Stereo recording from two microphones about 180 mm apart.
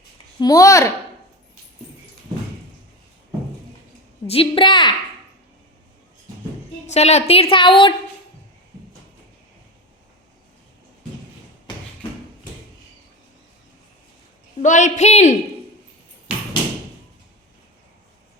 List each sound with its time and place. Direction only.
0.3 s a woman's voice: 20° left (ahead or behind)
4.3 s a woman's voice: 30° left (ahead or behind)
6.8 s a woman's voice: 35° left (ahead or behind)
14.6 s a woman's voice: 45° left (ahead or behind)